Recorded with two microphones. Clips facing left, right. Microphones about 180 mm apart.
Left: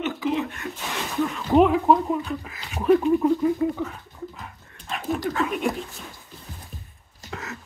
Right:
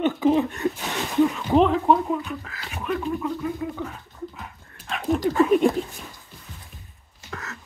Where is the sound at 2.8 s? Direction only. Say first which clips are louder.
Left 8 dB; 30° left (ahead or behind).